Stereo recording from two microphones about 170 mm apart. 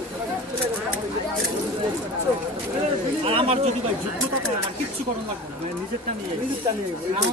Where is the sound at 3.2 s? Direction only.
35° right (ahead or behind).